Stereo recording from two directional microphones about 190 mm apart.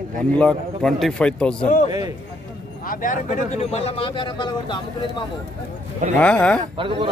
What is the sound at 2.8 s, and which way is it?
Speech, 40° left (ahead or behind).